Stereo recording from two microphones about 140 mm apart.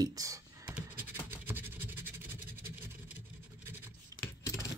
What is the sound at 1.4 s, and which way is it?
Scratch, 15° right (ahead or behind).